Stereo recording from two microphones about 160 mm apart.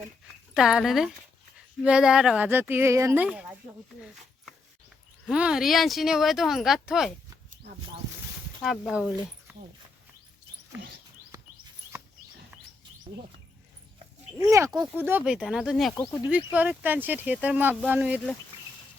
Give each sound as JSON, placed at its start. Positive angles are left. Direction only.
{"t": 0.5, "sound": "speech", "side_deg": 0}
{"t": 5.3, "sound": "speech", "side_deg": -5}
{"t": 8.6, "sound": "speech", "side_deg": 0}
{"t": 10.8, "sound": "a sound", "side_deg": -90}
{"t": 14.4, "sound": "speech", "side_deg": -20}
{"t": 14.7, "sound": "speech", "side_deg": -10}